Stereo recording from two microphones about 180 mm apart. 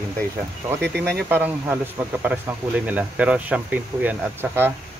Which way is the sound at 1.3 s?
10° right (ahead or behind).